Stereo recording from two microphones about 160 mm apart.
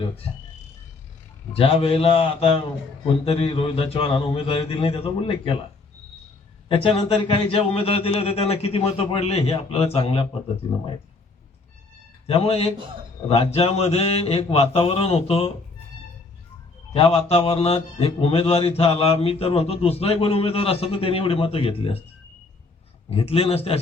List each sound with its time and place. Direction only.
1.5 s speech: 35° left (ahead or behind)
6.7 s speech: 35° left (ahead or behind)
12.3 s speech: 40° left (ahead or behind)
16.9 s speech: 35° left (ahead or behind)
23.0 s speech: 40° left (ahead or behind)